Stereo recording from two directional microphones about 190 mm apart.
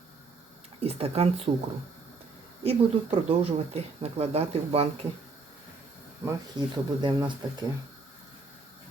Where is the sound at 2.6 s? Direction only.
30° right (ahead or behind).